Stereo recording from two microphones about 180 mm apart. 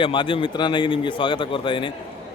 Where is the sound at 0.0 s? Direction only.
25° left (ahead or behind).